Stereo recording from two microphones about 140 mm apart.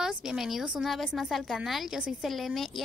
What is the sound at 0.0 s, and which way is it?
A woman's voice, 5° right (ahead or behind).